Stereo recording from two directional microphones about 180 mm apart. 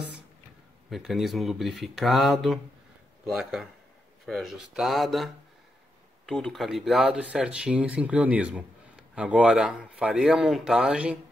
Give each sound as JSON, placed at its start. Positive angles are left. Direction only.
{"t": 0.8, "sound": "speech", "side_deg": 0}